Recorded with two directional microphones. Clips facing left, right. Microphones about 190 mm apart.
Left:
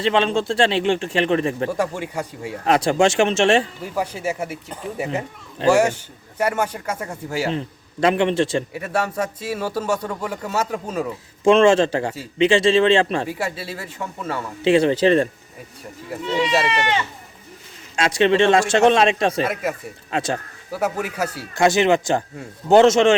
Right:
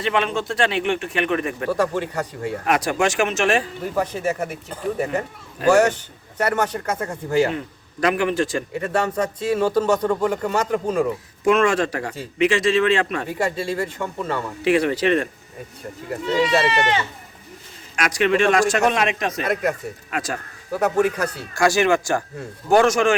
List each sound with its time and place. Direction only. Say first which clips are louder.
0.0 s a man's voice: left 3 dB; 30° left (ahead or behind)
1.7 s speech: right 2 dB; 10° left (ahead or behind)
2.6 s a man's voice: left 4 dB; 30° left (ahead or behind)
3.9 s speech: right 1 dB; 10° left (ahead or behind)
5.7 s speech: right 1 dB; 10° left (ahead or behind)
8.0 s a man's voice: left 2 dB; 25° left (ahead or behind)
8.7 s speech: right 2 dB; 5° left (ahead or behind)
11.4 s a man's voice: left 4 dB; 25° left (ahead or behind)
13.4 s speech: right 5 dB; 5° left (ahead or behind)
14.6 s a man's voice: left 4 dB; 25° left (ahead or behind)
16.2 s speech: right 1 dB; centre (ahead or behind)
17.9 s a man's voice: left 2 dB; 25° left (ahead or behind)
20.7 s speech: right 4 dB; 5° left (ahead or behind)
21.5 s a man's voice: left 2 dB; 20° left (ahead or behind)